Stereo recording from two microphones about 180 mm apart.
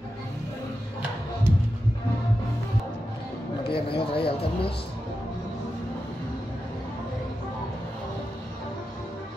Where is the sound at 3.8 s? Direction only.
30° left (ahead or behind).